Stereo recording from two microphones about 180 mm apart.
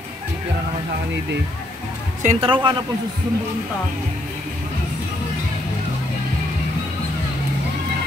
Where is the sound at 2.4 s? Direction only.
25° right (ahead or behind).